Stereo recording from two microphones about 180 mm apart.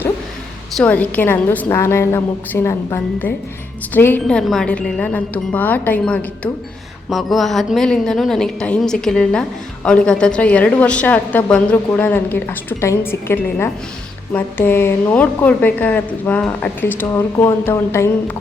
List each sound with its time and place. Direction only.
0.8 s a woman's voice: 10° left (ahead or behind)